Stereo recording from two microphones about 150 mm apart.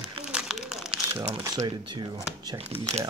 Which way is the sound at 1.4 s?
25° right (ahead or behind).